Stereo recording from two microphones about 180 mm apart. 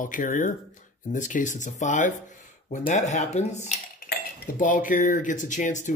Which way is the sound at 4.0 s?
55° left (ahead or behind).